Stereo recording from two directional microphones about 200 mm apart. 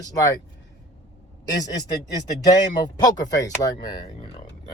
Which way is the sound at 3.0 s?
20° left (ahead or behind).